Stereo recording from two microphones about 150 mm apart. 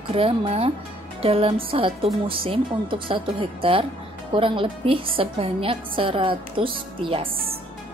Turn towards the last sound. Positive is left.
turn(degrees=-35)  # may be behind; listen again after turning